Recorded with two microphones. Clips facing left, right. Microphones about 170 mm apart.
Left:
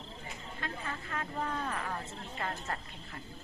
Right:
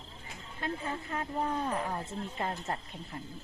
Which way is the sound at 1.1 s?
20° right (ahead or behind).